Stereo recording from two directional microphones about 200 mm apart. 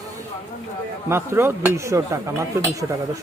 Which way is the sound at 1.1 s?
10° right (ahead or behind).